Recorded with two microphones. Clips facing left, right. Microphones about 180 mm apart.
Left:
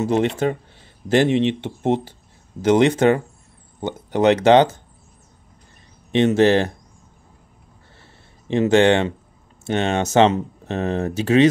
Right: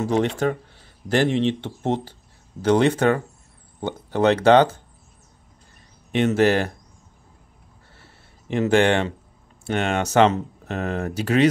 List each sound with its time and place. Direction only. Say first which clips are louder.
0.1 s speech: even; 20° left (ahead or behind)
6.1 s speech: left 3 dB; 25° left (ahead or behind)
8.5 s speech: left 3 dB; 25° left (ahead or behind)